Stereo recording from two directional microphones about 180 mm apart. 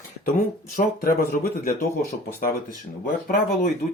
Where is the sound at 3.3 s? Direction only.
55° left (ahead or behind).